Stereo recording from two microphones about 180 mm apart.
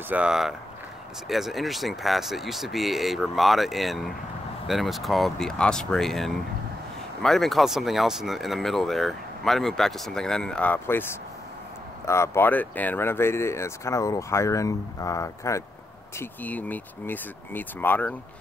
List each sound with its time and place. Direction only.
0.1 s speech: 5° right (ahead or behind)